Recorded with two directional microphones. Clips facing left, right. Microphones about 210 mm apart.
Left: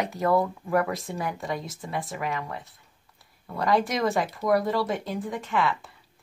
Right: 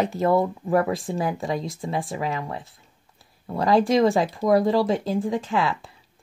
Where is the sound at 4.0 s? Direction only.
20° right (ahead or behind).